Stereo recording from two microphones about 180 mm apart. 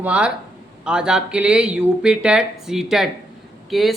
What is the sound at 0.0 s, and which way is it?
A man's voice, 5° right (ahead or behind).